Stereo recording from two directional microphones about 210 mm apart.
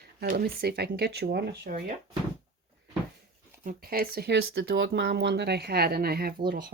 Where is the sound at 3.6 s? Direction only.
40° right (ahead or behind).